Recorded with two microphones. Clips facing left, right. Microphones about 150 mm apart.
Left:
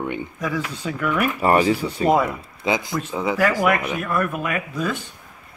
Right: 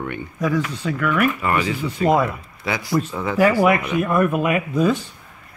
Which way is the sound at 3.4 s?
10° right (ahead or behind).